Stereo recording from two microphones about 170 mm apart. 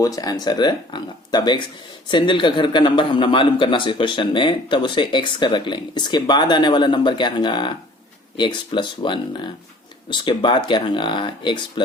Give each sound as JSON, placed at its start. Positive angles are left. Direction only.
{"t": 0.0, "sound": "a man's voice", "side_deg": 20}